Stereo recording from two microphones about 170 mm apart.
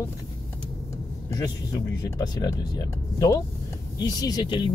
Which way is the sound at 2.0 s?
20° left (ahead or behind).